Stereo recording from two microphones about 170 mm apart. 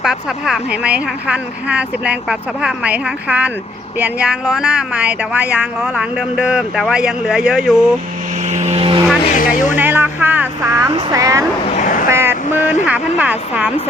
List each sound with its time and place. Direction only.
0.0 s speech: 5° right (ahead or behind)
8.4 s vehicle: 45° right (ahead or behind)
9.3 s music: 50° left (ahead or behind)
9.7 s a sound: 10° right (ahead or behind)
10.9 s speech: 20° right (ahead or behind)
11.8 s vehicle: 50° left (ahead or behind)
12.0 s speech: 15° right (ahead or behind)